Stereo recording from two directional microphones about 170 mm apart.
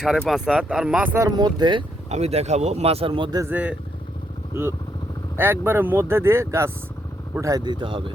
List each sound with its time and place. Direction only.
0.0 s speech: centre (ahead or behind)
1.4 s speech: 25° right (ahead or behind)
2.0 s speech: 40° right (ahead or behind)
3.4 s speech: 10° right (ahead or behind)
5.4 s speech: 15° right (ahead or behind); by 8.1 s 30° right (ahead or behind)